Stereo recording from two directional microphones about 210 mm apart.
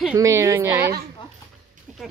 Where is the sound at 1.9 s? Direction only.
Centre (ahead or behind).